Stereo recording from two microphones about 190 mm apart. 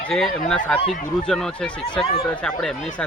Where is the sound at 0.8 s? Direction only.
30° left (ahead or behind).